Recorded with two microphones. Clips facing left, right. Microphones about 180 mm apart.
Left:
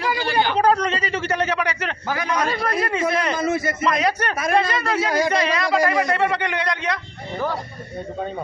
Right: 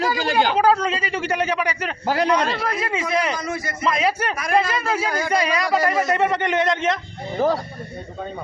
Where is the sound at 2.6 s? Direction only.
5° right (ahead or behind).